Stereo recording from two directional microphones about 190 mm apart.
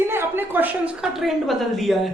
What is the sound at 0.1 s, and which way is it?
A woman's voice, 10° right (ahead or behind).